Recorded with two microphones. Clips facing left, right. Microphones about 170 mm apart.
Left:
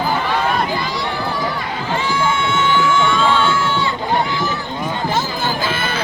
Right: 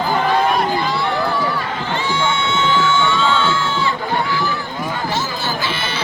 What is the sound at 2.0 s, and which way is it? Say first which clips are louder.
Crowd: left 1 dB; 25° right (ahead or behind).